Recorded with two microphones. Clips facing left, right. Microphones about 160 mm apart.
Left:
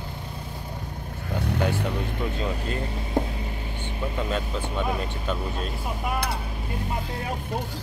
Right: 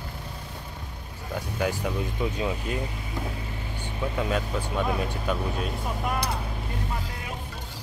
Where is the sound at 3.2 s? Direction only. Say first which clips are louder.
Left 8 dB; 55° left (ahead or behind).